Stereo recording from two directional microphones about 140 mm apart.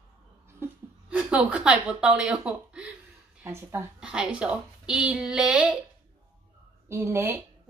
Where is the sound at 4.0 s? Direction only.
5° right (ahead or behind).